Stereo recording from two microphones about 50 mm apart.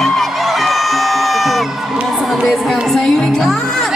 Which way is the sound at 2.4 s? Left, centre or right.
Centre.